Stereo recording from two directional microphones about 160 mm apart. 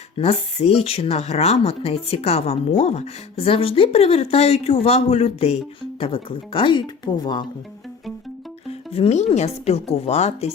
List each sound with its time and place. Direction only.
0.2 s speech: 40° left (ahead or behind)
8.9 s speech: 40° left (ahead or behind)